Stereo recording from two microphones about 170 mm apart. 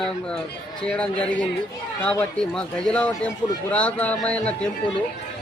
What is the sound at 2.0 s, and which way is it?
Music, 5° left (ahead or behind).